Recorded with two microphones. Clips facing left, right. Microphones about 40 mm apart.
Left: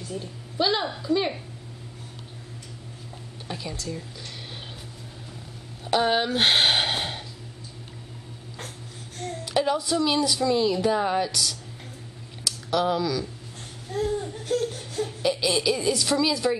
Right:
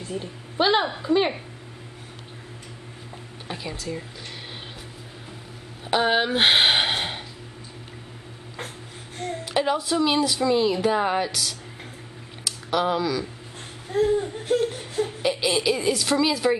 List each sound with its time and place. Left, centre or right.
0.0 s speech: right
3.4 s speech: centre
5.9 s a sound: centre
9.2 s speech: centre